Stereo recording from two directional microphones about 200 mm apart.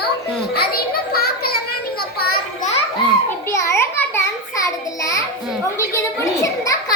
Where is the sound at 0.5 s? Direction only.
50° left (ahead or behind).